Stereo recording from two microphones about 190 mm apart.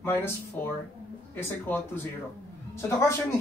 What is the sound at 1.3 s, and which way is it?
Speech, 10° left (ahead or behind).